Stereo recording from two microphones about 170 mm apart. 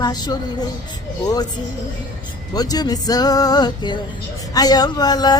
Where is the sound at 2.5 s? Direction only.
25° left (ahead or behind).